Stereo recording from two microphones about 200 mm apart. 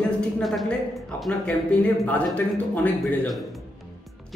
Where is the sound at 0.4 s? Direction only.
Centre (ahead or behind).